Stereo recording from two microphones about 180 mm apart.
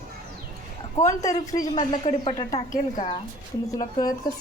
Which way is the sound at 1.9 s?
35° left (ahead or behind).